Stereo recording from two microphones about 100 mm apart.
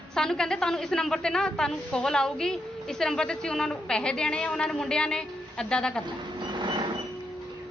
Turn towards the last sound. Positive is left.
turn(degrees=-50)  # may be behind; listen again after turning